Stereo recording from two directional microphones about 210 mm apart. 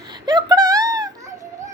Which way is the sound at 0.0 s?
20° right (ahead or behind).